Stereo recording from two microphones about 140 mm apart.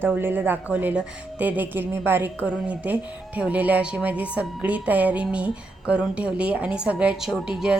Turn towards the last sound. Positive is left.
turn(degrees=-5)  # may be behind; listen again after turning